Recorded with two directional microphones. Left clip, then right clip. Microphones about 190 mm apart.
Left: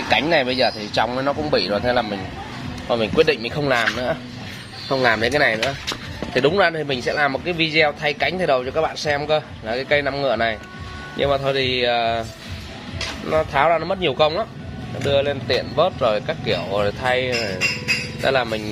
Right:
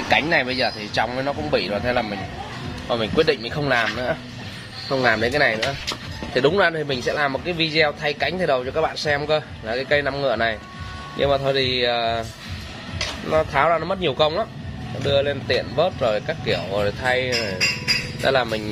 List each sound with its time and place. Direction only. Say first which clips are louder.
0.1 s a man's voice: left 1 dB; 5° left (ahead or behind)
5.0 s speech: left 1 dB; 25° left (ahead or behind)
6.3 s a man's voice: left 1 dB; 5° left (ahead or behind)
13.5 s speech: left 1 dB; 10° left (ahead or behind)